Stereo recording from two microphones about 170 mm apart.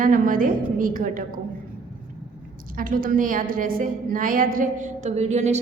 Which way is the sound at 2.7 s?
55° right (ahead or behind).